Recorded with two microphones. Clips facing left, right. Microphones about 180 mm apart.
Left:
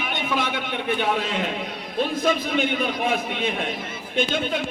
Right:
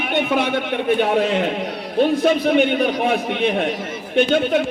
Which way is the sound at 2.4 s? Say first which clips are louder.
Right 7 dB; 65° right (ahead or behind).